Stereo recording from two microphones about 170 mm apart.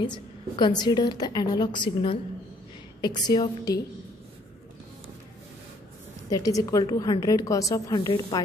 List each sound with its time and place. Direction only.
0.0 s a woman's voice: 25° left (ahead or behind)
6.3 s a woman's voice: 20° left (ahead or behind)